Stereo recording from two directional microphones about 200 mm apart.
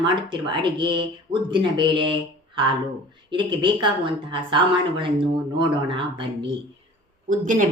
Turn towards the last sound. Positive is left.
turn(degrees=-40)  # may be behind; listen again after turning